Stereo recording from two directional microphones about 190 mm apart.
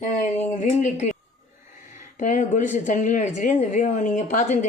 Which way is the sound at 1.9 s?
40° left (ahead or behind).